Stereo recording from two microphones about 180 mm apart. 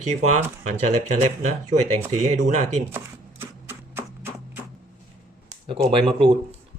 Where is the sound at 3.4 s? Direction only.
10° right (ahead or behind).